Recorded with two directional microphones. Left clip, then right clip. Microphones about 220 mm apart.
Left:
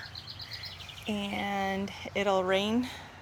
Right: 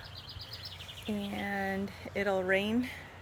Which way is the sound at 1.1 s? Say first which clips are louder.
Left 4 dB; 5° left (ahead or behind).